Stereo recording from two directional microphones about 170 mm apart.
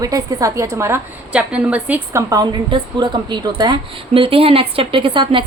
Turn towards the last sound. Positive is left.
turn(degrees=-30)  # may be behind; listen again after turning